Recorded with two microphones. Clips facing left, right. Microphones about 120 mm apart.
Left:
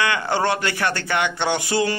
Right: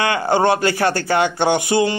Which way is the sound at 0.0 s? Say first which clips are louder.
Right 5 dB; 25° right (ahead or behind).